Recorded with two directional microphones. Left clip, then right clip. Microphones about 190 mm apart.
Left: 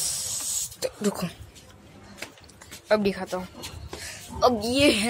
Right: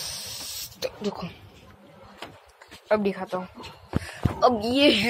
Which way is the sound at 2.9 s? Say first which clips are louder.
Left 1 dB; 35° left (ahead or behind).